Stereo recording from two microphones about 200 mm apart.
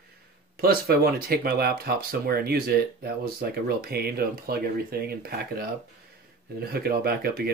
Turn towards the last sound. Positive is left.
turn(degrees=-50)  # may be behind; listen again after turning